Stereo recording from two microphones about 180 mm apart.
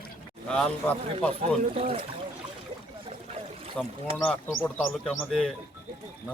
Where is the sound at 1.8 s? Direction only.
30° right (ahead or behind).